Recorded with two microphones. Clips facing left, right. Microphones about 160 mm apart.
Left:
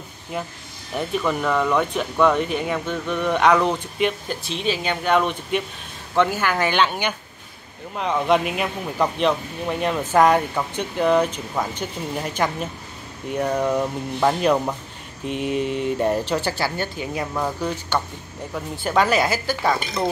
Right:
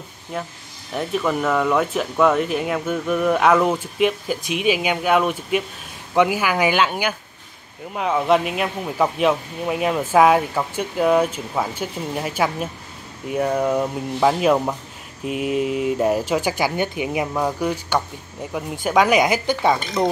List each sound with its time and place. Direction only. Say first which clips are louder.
0.9 s speech: right 1 dB; centre (ahead or behind); by 19.8 s 20° right (ahead or behind)